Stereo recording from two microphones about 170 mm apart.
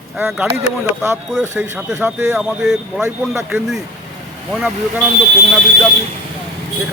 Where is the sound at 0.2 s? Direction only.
10° right (ahead or behind).